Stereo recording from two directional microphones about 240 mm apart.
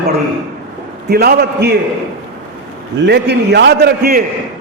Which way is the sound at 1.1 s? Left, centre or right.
Right.